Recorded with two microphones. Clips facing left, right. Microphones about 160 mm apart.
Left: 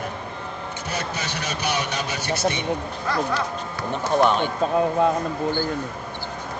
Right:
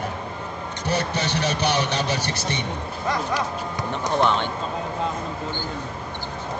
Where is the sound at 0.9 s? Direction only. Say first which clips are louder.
Right 6 dB; 35° right (ahead or behind).